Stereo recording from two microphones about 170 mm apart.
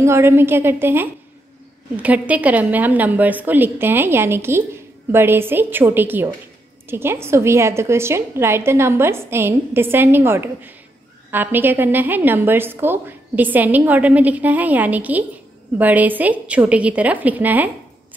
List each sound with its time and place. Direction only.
0.0 s a woman's voice: 15° right (ahead or behind)